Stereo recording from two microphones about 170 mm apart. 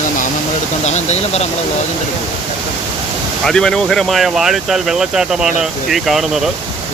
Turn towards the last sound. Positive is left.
turn(degrees=0)  # may be behind; listen again after turning